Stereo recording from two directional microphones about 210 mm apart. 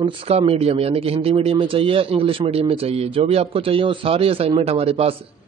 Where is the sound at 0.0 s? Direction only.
25° right (ahead or behind).